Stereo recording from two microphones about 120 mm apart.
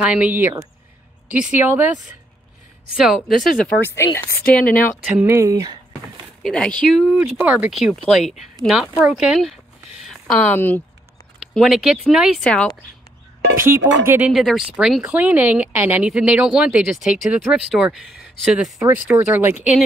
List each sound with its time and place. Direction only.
0.0 s speech: 10° right (ahead or behind)
2.9 s speech: centre (ahead or behind)
3.6 s speech: 20° left (ahead or behind)
5.0 s a sound: 20° right (ahead or behind)
6.4 s speech: 10° left (ahead or behind)
7.0 s speech: 10° right (ahead or behind)
10.3 s speech: 10° left (ahead or behind)
11.5 s speech: centre (ahead or behind)
12.4 s speech: 5° left (ahead or behind)
13.6 s speech: 20° right (ahead or behind); by 18.7 s 5° right (ahead or behind)
18.8 s speech: 15° right (ahead or behind)